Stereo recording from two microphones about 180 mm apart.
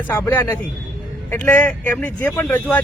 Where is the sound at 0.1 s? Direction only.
10° left (ahead or behind).